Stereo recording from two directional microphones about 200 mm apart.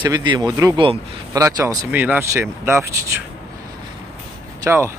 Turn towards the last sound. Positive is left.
turn(degrees=-15)  # may be behind; listen again after turning